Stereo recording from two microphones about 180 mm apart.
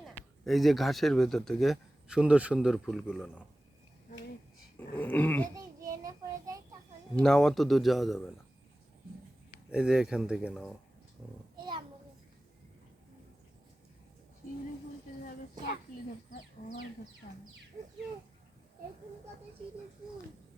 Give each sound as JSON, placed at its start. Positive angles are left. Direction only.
{"t": 0.1, "sound": "speech", "side_deg": 5}
{"t": 4.9, "sound": "dog", "side_deg": 10}
{"t": 5.5, "sound": "child singing", "side_deg": -20}
{"t": 7.2, "sound": "a man's voice", "side_deg": 5}
{"t": 9.7, "sound": "a man's voice", "side_deg": -5}
{"t": 11.5, "sound": "a sound", "side_deg": -25}